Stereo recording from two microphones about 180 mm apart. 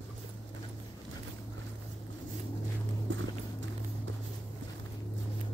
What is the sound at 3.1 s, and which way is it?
Walk, 90° right.